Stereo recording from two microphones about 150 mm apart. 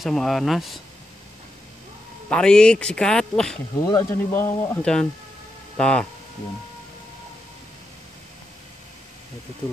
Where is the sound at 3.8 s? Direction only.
25° left (ahead or behind).